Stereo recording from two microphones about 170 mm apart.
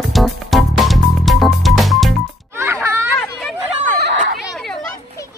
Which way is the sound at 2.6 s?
15° right (ahead or behind).